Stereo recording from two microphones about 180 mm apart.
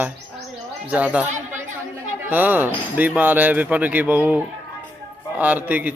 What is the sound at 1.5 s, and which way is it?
Speech, 45° right (ahead or behind).